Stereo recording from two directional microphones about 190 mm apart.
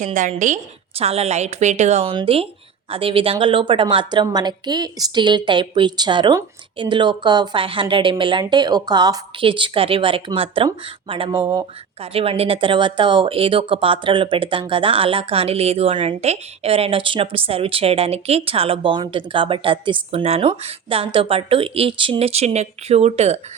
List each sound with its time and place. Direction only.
0.0 s a woman's voice: 40° right (ahead or behind)